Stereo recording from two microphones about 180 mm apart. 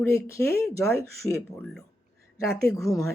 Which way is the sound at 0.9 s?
15° left (ahead or behind).